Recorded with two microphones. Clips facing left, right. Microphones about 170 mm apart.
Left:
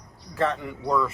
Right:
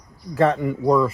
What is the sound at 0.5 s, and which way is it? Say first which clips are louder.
Speech: right 9 dB; 45° right (ahead or behind).